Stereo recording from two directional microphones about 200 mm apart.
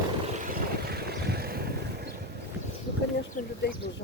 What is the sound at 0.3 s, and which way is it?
Vehicle, 45° right (ahead or behind).